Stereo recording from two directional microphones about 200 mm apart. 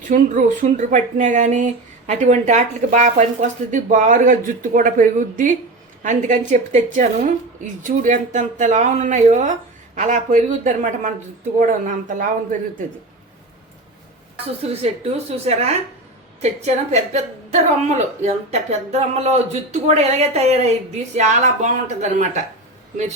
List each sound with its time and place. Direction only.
0.0 s a woman's voice: 40° right (ahead or behind)
14.6 s speech: 30° right (ahead or behind)